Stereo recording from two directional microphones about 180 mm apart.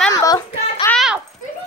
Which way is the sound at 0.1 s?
20° left (ahead or behind).